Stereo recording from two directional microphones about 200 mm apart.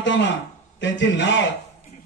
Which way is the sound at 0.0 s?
65° left (ahead or behind).